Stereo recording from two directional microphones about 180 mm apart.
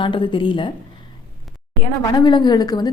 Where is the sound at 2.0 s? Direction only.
20° left (ahead or behind).